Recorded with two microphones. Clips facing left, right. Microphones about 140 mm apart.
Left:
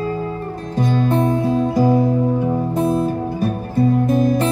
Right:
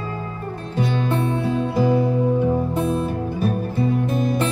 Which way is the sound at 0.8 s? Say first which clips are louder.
Left 5 dB; 40° left (ahead or behind).